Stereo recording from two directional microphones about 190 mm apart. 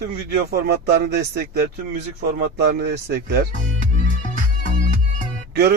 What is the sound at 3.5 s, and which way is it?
Music, 40° left (ahead or behind).